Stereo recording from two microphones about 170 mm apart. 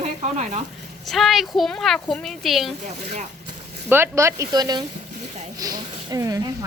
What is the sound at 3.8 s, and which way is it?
Speech, 15° right (ahead or behind).